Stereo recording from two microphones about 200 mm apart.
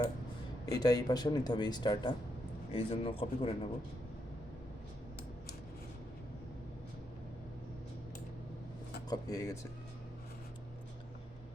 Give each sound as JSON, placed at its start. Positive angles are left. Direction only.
{"t": 0.6, "sound": "speech", "side_deg": 20}
{"t": 9.0, "sound": "speech", "side_deg": 20}